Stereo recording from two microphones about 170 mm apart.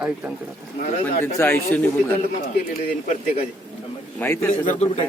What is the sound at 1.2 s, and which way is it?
Speech, 15° left (ahead or behind).